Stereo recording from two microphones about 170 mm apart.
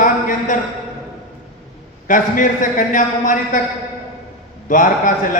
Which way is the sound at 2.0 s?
50° left (ahead or behind).